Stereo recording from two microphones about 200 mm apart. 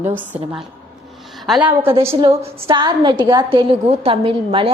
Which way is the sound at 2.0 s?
15° right (ahead or behind).